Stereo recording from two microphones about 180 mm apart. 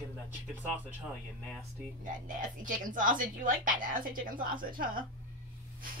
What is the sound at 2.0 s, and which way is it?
A woman's voice, 45° right (ahead or behind).